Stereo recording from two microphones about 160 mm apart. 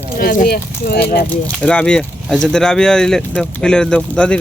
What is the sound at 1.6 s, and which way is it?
Speech, 5° left (ahead or behind).